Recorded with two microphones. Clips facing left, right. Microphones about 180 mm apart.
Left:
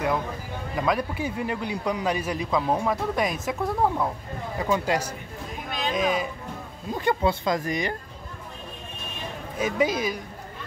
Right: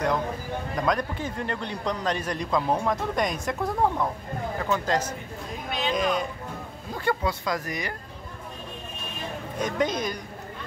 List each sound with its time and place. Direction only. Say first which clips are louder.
0.7 s a man's voice: left 2 dB; 5° left (ahead or behind)
5.7 s speech: right 1 dB; 45° left (ahead or behind)
5.9 s a man's voice: left 2 dB; centre (ahead or behind)
7.1 s speech: left 3 dB; 25° left (ahead or behind)
9.6 s a man's voice: left 2 dB; 5° left (ahead or behind)